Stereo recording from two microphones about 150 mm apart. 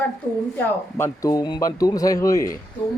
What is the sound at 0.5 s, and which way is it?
A man's voice, 15° left (ahead or behind).